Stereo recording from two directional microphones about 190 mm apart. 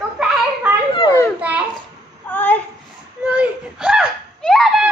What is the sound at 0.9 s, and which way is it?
Children playing, 20° left (ahead or behind).